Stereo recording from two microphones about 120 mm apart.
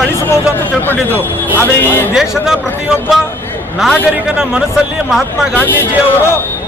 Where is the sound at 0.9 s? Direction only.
15° left (ahead or behind).